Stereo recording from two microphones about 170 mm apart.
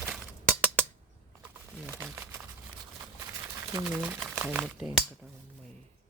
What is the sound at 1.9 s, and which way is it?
Crumpling, 15° right (ahead or behind).